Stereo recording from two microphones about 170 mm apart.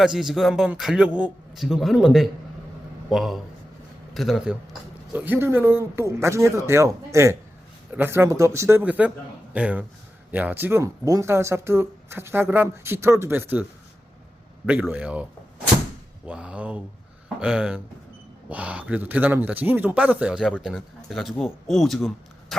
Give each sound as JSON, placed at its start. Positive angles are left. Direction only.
{"t": 0.0, "sound": "a man's voice", "side_deg": 0}
{"t": 14.7, "sound": "a man's voice", "side_deg": -10}